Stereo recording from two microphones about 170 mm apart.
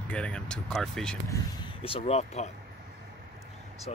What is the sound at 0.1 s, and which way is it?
Speech, 5° left (ahead or behind).